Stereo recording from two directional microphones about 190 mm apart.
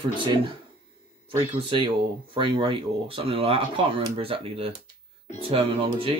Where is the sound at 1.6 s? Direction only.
25° right (ahead or behind).